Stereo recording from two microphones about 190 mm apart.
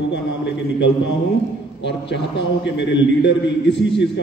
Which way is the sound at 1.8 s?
70° left (ahead or behind).